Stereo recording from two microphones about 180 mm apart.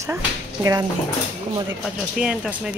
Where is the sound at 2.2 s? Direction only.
5° right (ahead or behind).